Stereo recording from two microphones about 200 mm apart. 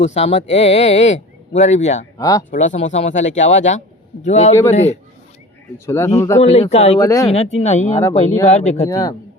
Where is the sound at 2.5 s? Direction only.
35° left (ahead or behind).